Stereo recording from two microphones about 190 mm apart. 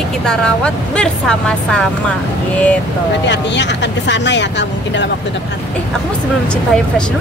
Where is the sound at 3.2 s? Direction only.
65° left (ahead or behind).